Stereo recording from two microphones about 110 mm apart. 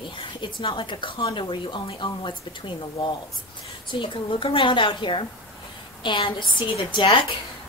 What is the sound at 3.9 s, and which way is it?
A woman's voice, 55° left (ahead or behind).